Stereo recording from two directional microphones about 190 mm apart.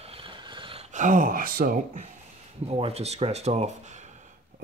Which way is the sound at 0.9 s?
45° right (ahead or behind).